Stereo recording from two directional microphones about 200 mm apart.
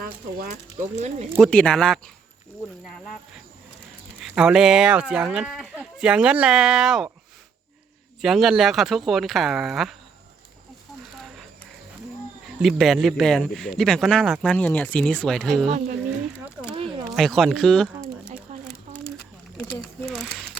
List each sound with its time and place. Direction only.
0.0 s speech: 45° right (ahead or behind)
1.4 s speech: 5° left (ahead or behind)
4.2 s speech: 5° right (ahead or behind)
8.2 s speech: centre (ahead or behind)
12.5 s speech: centre (ahead or behind)
16.6 s a sound: 25° right (ahead or behind)
17.2 s speech: centre (ahead or behind)
18.5 s a sound: 35° right (ahead or behind)
19.8 s a sound: centre (ahead or behind)